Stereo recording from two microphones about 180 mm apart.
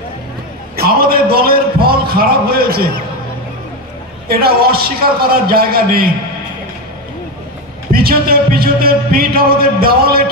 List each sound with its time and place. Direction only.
0.7 s a sound: 55° right (ahead or behind)
4.3 s speech: 55° right (ahead or behind)
7.9 s speech: 55° right (ahead or behind)